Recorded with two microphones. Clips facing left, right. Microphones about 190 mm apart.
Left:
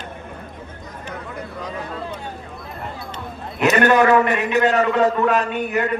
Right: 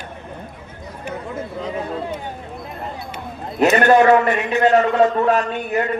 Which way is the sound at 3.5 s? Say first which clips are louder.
Right 2 dB; 35° right (ahead or behind).